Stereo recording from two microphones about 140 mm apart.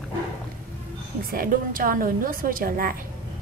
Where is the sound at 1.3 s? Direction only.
90° right.